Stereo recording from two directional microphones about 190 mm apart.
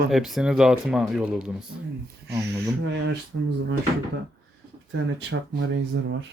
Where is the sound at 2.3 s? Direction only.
15° right (ahead or behind).